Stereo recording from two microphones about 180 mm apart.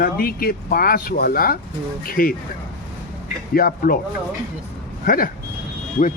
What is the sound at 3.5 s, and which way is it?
Speech, 55° left (ahead or behind).